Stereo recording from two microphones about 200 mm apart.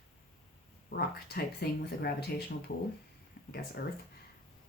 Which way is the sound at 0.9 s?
55° left (ahead or behind).